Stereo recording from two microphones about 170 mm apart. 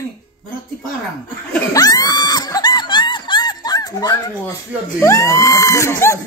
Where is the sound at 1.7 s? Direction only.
20° left (ahead or behind).